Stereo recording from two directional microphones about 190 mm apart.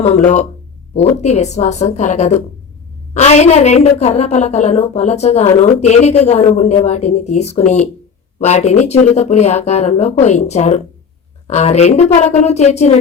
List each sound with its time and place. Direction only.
1.1 s a woman's voice: 35° left (ahead or behind)